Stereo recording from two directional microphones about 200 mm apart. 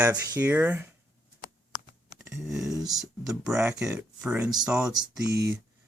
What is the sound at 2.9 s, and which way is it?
Speech, centre (ahead or behind).